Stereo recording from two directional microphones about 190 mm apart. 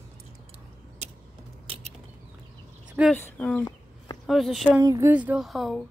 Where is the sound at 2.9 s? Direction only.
5° right (ahead or behind).